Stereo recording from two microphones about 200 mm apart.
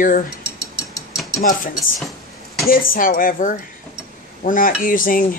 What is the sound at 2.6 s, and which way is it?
Speech, 45° left (ahead or behind).